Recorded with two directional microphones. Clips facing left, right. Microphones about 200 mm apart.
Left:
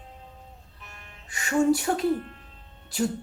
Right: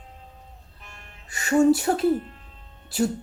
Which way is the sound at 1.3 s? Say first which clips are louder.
Right 4 dB; 40° right (ahead or behind).